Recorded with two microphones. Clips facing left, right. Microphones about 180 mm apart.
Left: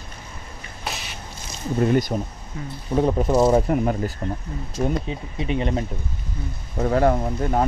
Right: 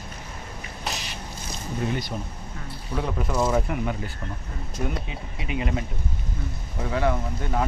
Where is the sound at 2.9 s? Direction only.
35° left (ahead or behind).